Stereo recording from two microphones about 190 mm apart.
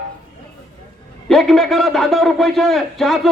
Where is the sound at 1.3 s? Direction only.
Centre (ahead or behind).